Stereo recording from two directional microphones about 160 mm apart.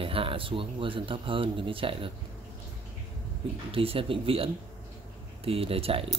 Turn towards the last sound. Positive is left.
turn(degrees=-35)  # may be behind; listen again after turning